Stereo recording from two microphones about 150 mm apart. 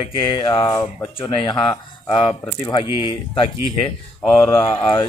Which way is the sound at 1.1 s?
35° left (ahead or behind).